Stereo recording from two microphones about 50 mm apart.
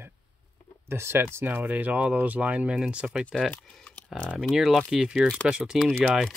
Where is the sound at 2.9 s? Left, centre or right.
Centre.